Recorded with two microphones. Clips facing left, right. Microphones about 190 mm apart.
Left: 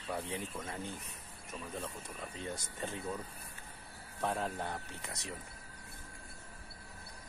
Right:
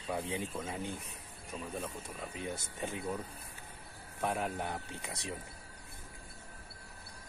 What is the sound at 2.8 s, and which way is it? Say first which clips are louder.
Speech: right 2 dB; 10° right (ahead or behind).